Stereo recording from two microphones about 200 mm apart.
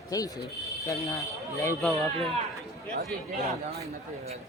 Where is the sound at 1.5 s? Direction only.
15° left (ahead or behind).